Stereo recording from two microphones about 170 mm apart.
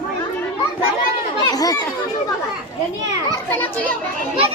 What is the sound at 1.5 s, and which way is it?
Children playing, 20° left (ahead or behind).